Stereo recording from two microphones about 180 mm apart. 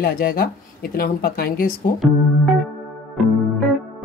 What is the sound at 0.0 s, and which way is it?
Speech, 55° left (ahead or behind).